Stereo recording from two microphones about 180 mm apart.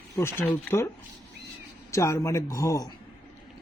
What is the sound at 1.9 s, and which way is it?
Speech, 15° left (ahead or behind).